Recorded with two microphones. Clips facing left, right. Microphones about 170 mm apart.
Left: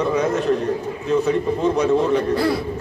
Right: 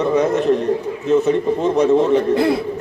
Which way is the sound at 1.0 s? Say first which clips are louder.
Right 3 dB; 20° right (ahead or behind).